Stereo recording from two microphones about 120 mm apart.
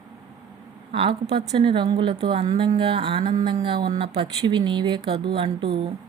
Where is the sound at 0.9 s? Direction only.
55° right (ahead or behind).